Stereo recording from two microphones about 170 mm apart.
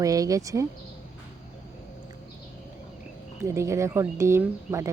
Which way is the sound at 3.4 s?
15° right (ahead or behind).